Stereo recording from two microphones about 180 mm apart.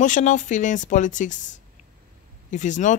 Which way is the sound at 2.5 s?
45° left (ahead or behind).